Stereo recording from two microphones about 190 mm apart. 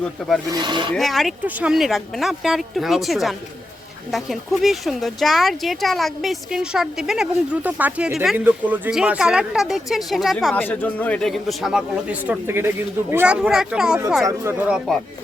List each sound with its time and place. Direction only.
0.2 s speech: centre (ahead or behind)
0.5 s speech: 25° right (ahead or behind)
0.9 s speech: centre (ahead or behind)